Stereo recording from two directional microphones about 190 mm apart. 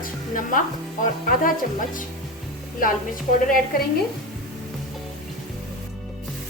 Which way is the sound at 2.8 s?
45° left (ahead or behind).